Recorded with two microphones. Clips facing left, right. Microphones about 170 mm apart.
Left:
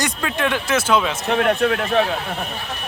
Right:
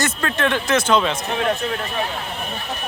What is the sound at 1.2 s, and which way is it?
Speech, 60° left (ahead or behind).